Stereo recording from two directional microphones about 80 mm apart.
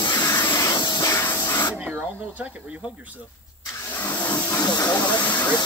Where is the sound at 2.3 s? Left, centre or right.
Centre.